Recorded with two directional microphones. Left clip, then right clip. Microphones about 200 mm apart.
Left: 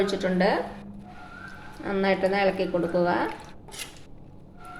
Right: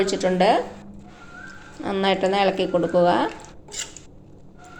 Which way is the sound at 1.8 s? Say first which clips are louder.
Right 3 dB; 35° right (ahead or behind).